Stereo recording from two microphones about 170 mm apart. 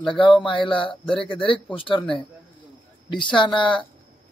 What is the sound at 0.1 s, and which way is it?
A man's voice, 30° left (ahead or behind).